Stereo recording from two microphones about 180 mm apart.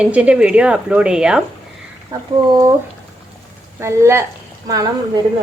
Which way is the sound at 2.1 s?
15° right (ahead or behind).